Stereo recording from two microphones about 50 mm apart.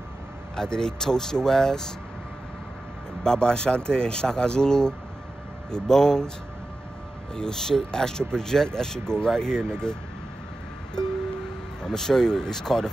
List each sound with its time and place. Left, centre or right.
0.6 s speech: centre
3.3 s speech: centre
7.3 s speech: centre
11.8 s speech: centre